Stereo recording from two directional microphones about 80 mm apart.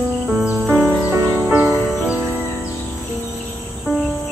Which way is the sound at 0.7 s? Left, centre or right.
Right.